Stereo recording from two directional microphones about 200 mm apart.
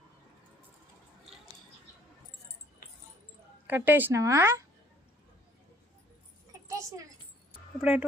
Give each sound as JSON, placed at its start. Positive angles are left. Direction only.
{"t": 3.7, "sound": "speech", "side_deg": -10}
{"t": 6.7, "sound": "a sound", "side_deg": -15}
{"t": 7.8, "sound": "speech", "side_deg": -5}